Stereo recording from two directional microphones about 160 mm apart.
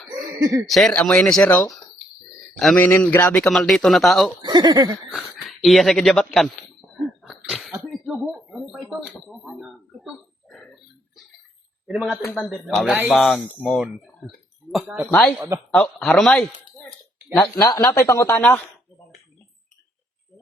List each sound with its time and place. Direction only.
0.7 s a man's voice: centre (ahead or behind)
4.4 s speech: 25° right (ahead or behind)
5.1 s speech: centre (ahead or behind)
7.2 s a sound: 5° right (ahead or behind)
9.3 s speech: centre (ahead or behind)
11.9 s a man's voice: 5° right (ahead or behind)
12.2 s speech: 10° left (ahead or behind)
12.7 s speech: 5° right (ahead or behind)
15.4 s speech: 20° right (ahead or behind)
15.7 s a man's voice: 5° left (ahead or behind)
17.3 s speech: 20° left (ahead or behind)